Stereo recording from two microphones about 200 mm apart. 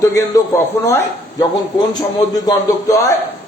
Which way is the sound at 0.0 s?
15° left (ahead or behind).